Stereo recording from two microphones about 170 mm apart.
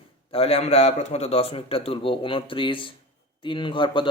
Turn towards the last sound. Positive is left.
turn(degrees=30)  # may be behind; listen again after turning